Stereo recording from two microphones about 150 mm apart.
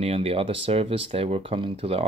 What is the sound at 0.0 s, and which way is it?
Speech, 40° right (ahead or behind).